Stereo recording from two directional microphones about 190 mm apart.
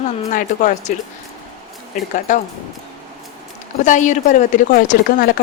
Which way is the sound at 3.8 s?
40° left (ahead or behind).